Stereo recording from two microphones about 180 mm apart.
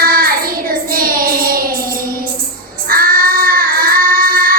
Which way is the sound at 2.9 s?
55° right (ahead or behind).